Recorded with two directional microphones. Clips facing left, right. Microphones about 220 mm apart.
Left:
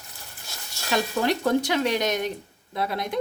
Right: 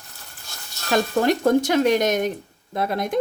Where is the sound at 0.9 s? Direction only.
50° right (ahead or behind).